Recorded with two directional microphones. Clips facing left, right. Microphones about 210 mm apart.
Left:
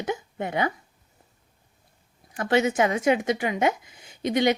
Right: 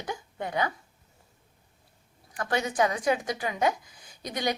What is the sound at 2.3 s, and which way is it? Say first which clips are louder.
A woman's voice: left 5 dB; 20° left (ahead or behind).